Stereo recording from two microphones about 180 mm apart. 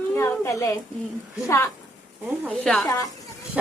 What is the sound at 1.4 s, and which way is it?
Speech, 15° left (ahead or behind).